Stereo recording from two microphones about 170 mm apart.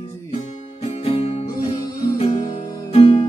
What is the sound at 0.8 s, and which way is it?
Music, 35° left (ahead or behind).